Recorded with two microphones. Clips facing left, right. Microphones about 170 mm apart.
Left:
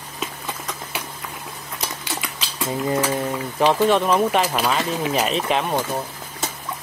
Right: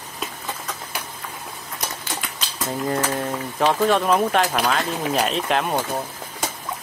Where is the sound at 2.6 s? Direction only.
10° left (ahead or behind).